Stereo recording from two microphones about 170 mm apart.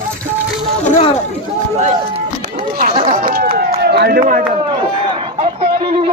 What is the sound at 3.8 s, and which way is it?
Speech, 70° right (ahead or behind).